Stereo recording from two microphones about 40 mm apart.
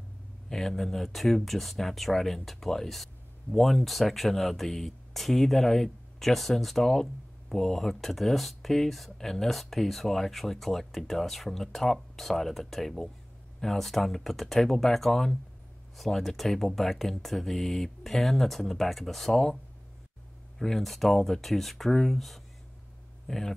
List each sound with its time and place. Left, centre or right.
0.5 s speech: centre